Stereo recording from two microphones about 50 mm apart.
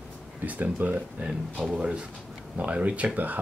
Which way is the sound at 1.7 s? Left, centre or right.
Right.